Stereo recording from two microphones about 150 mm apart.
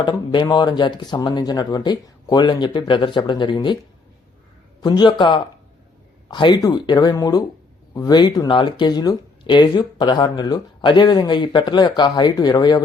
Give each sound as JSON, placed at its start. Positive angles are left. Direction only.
{"t": 0.0, "sound": "speech", "side_deg": 30}
{"t": 4.8, "sound": "speech", "side_deg": 30}